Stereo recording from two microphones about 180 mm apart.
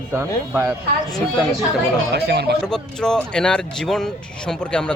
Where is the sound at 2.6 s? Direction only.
5° left (ahead or behind).